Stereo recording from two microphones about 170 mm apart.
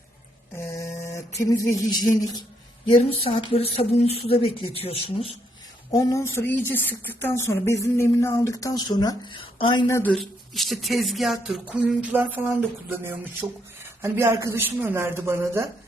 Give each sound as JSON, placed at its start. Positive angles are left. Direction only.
{"t": 0.5, "sound": "mantra", "side_deg": 15}
{"t": 1.4, "sound": "a sound", "side_deg": 20}
{"t": 2.8, "sound": "speech", "side_deg": 35}
{"t": 5.9, "sound": "a sound", "side_deg": 20}
{"t": 6.3, "sound": "speech", "side_deg": 10}
{"t": 9.9, "sound": "speech", "side_deg": 5}